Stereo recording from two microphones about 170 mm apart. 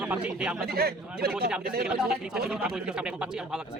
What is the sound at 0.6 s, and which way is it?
Speech, 65° right (ahead or behind).